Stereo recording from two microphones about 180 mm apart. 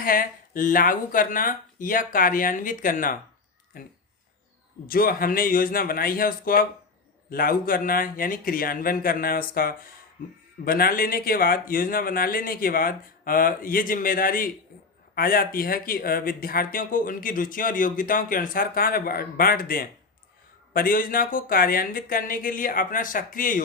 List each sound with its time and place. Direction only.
0.0 s speech: 50° left (ahead or behind)